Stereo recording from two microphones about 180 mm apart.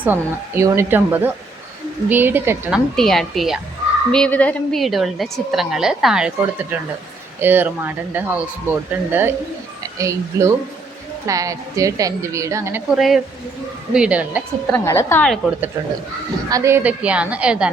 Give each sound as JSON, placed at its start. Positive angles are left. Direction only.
{"t": 0.0, "sound": "speech", "side_deg": -15}
{"t": 2.9, "sound": "a woman's voice", "side_deg": 0}
{"t": 13.0, "sound": "a woman's voice", "side_deg": 0}
{"t": 14.8, "sound": "a woman's voice", "side_deg": 15}
{"t": 16.5, "sound": "speech", "side_deg": -15}